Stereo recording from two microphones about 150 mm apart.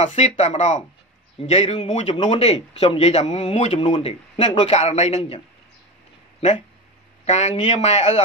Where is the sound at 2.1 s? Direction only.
30° left (ahead or behind).